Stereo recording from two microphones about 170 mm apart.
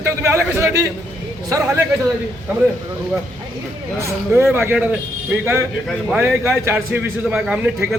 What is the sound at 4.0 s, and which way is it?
A man's voice, 15° right (ahead or behind).